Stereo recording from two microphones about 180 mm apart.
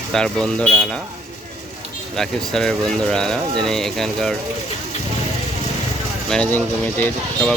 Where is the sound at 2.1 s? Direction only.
5° left (ahead or behind).